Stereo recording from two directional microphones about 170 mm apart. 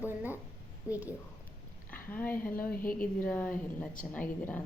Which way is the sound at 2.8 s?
55° left (ahead or behind).